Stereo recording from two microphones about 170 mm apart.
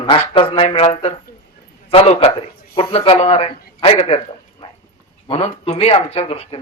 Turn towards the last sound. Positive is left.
turn(degrees=35)  # may be behind; listen again after turning